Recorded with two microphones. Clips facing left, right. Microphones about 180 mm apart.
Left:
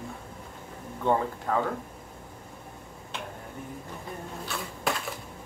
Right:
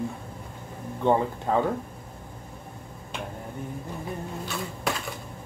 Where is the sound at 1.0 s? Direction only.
25° right (ahead or behind).